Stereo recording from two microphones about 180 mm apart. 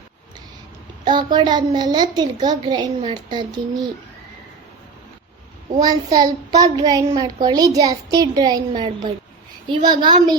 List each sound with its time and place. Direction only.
1.0 s a woman's voice: 25° right (ahead or behind)
5.8 s a woman's voice: 20° right (ahead or behind)